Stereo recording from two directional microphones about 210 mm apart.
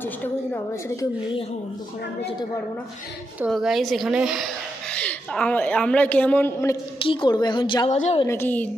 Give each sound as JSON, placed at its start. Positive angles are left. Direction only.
{"t": 0.0, "sound": "a woman's voice", "side_deg": 10}
{"t": 3.3, "sound": "a woman's voice", "side_deg": -5}
{"t": 7.0, "sound": "a woman's voice", "side_deg": 25}
{"t": 8.3, "sound": "a child's voice", "side_deg": 10}